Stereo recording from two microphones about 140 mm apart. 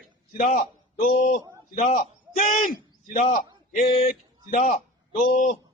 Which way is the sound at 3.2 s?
60° left (ahead or behind).